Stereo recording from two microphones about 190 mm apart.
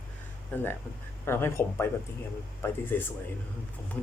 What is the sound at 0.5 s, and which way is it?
Speech, 10° left (ahead or behind).